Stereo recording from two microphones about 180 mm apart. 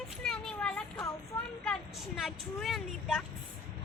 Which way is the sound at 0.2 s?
5° left (ahead or behind).